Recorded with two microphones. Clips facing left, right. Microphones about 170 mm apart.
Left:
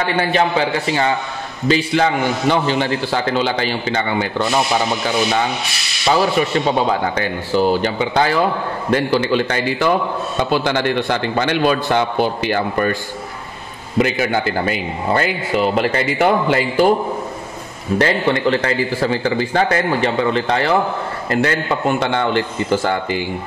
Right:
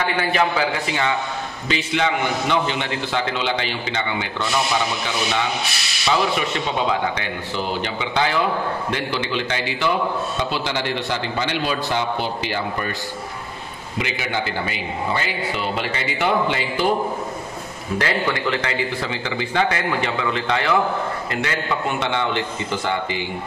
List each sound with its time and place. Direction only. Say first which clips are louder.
0.2 s a man's voice: left 4 dB; 30° left (ahead or behind)
6.0 s a man's voice: left 5 dB; 40° left (ahead or behind)
13.9 s a man's voice: left 8 dB; 45° left (ahead or behind)
17.9 s a man's voice: left 6 dB; 35° left (ahead or behind)